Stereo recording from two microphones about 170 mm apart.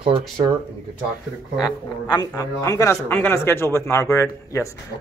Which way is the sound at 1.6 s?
25° left (ahead or behind).